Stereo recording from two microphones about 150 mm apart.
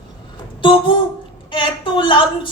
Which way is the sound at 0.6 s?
35° left (ahead or behind).